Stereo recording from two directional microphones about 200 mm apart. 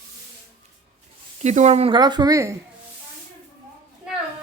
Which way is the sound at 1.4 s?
35° right (ahead or behind).